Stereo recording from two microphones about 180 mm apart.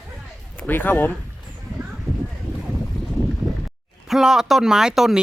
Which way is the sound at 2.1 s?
Centre (ahead or behind).